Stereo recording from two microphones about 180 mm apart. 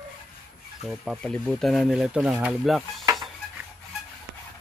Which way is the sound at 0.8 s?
Centre (ahead or behind).